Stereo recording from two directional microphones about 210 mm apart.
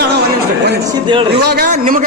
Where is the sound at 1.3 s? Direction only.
50° right (ahead or behind).